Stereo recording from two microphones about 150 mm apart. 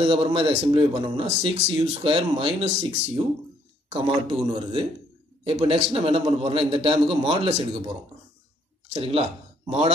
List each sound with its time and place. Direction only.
0.0 s speech: 35° right (ahead or behind)
3.9 s speech: 35° right (ahead or behind)
8.9 s speech: 40° right (ahead or behind)